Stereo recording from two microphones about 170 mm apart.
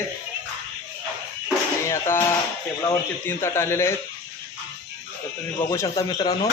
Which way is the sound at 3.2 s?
15° left (ahead or behind).